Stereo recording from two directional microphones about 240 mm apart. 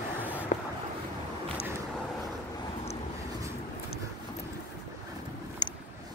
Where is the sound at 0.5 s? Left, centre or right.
Left.